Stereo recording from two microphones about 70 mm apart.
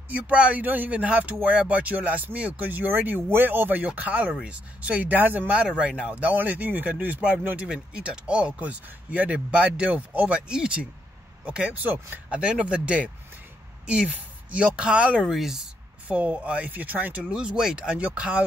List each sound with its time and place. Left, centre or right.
0.1 s speech: centre
12.3 s speech: centre
14.1 s speech: centre
16.1 s speech: centre